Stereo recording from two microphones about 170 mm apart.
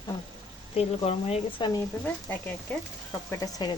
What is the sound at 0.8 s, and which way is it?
Speech, 35° left (ahead or behind).